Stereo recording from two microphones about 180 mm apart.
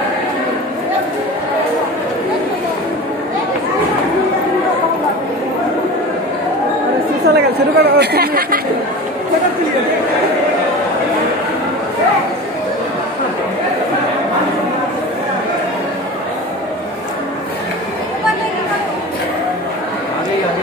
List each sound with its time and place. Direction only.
7.2 s chatter: 65° right (ahead or behind)